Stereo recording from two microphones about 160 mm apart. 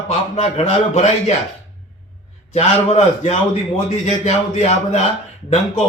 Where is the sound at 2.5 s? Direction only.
40° left (ahead or behind).